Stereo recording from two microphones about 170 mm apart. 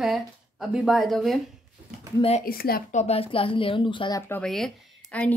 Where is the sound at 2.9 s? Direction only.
35° left (ahead or behind); by 4.4 s 15° left (ahead or behind).